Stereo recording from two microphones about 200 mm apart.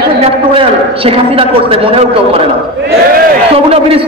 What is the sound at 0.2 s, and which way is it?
A man's voice, 25° right (ahead or behind).